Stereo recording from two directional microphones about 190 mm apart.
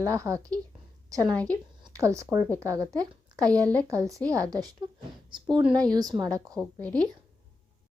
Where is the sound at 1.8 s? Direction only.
15° right (ahead or behind).